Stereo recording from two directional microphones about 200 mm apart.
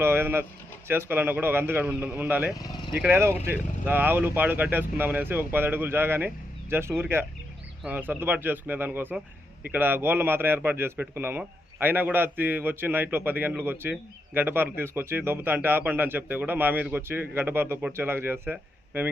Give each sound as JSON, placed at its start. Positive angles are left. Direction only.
{"t": 0.0, "sound": "a man's voice", "side_deg": -10}
{"t": 2.6, "sound": "vehicle", "side_deg": 20}
{"t": 3.0, "sound": "a man's voice", "side_deg": -10}